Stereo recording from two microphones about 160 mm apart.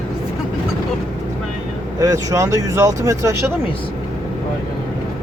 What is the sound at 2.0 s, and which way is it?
Speech, 20° right (ahead or behind).